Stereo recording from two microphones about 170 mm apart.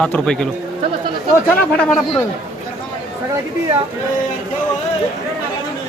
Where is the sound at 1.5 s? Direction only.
5° left (ahead or behind).